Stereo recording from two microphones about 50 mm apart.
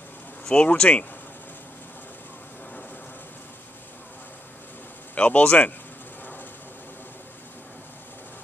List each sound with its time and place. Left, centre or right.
0.6 s speech: left
5.1 s speech: left